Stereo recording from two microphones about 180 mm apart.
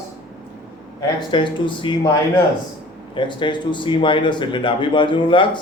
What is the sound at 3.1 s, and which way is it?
Speech, 25° left (ahead or behind).